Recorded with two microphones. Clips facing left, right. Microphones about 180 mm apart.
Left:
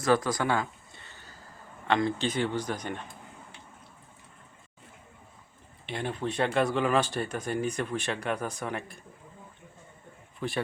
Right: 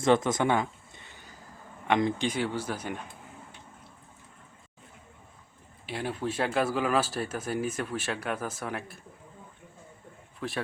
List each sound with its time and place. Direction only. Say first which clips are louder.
0.0 s a sound: right 2 dB; 25° right (ahead or behind)
1.9 s speech: right 1 dB; 15° right (ahead or behind)
5.8 s speech: even; 5° right (ahead or behind)
10.4 s speech: left 2 dB; centre (ahead or behind)